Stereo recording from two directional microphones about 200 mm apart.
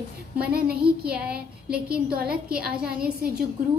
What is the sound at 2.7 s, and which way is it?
Child singing, 5° right (ahead or behind).